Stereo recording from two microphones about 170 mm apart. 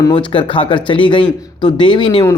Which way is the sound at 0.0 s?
30° left (ahead or behind).